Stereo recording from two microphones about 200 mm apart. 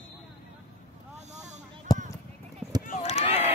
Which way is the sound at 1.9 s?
20° left (ahead or behind).